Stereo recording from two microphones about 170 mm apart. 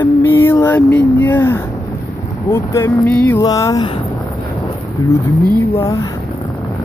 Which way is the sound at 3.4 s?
20° left (ahead or behind).